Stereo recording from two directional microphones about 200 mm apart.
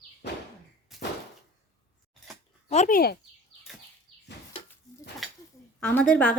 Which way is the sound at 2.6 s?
35° left (ahead or behind).